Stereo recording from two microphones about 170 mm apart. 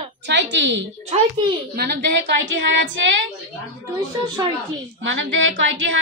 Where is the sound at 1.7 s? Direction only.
75° right (ahead or behind).